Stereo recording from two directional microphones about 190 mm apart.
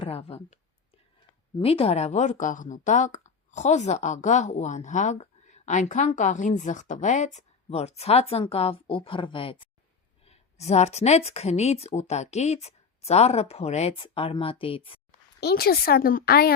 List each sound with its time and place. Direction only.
0.0 s a woman's voice: 30° left (ahead or behind)
1.6 s a woman's voice: 30° left (ahead or behind)
15.4 s a woman's voice: 55° left (ahead or behind)